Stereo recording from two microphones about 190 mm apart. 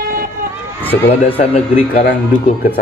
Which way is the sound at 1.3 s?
30° left (ahead or behind).